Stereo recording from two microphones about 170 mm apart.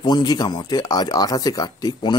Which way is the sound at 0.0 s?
25° left (ahead or behind).